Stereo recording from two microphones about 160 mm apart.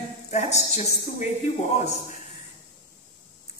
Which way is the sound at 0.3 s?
45° left (ahead or behind).